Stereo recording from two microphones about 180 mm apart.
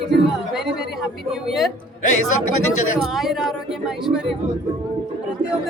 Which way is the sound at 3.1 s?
Centre (ahead or behind).